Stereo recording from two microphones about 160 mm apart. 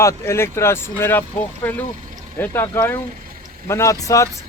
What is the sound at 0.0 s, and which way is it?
Speech, 15° left (ahead or behind).